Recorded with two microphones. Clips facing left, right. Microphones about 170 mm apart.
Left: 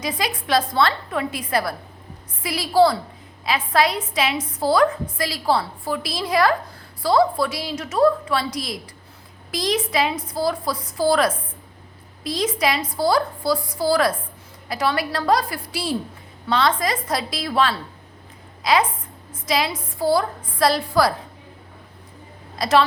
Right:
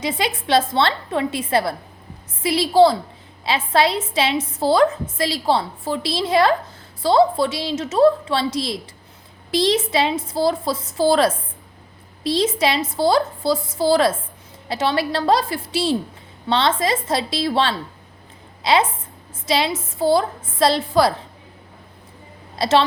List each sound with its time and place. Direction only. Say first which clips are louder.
0.0 s a woman's voice: right 3 dB; 25° right (ahead or behind)
22.5 s a woman's voice: right 1 dB; 30° right (ahead or behind)